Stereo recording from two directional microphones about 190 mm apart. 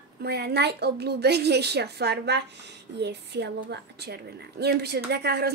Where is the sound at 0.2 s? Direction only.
60° right (ahead or behind).